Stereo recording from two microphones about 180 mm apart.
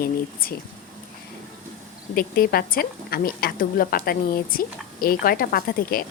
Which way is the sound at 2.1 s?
55° left (ahead or behind).